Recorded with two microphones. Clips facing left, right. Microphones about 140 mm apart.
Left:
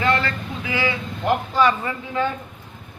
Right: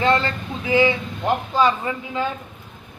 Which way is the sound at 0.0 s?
25° right (ahead or behind).